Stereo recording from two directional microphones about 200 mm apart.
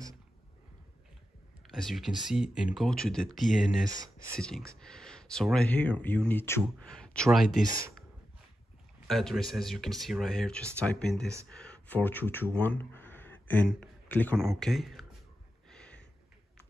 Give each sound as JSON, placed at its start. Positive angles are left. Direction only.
{"t": 1.7, "sound": "speech", "side_deg": 0}
{"t": 3.8, "sound": "speech", "side_deg": -20}
{"t": 4.4, "sound": "speech", "side_deg": 5}
{"t": 9.0, "sound": "speech", "side_deg": 0}
{"t": 15.7, "sound": "a sound", "side_deg": 5}